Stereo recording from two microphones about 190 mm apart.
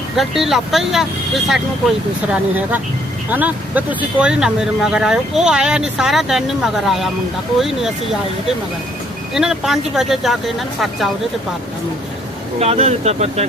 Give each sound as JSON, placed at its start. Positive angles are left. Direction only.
{"t": 0.2, "sound": "speech", "side_deg": 0}
{"t": 12.5, "sound": "speech", "side_deg": -35}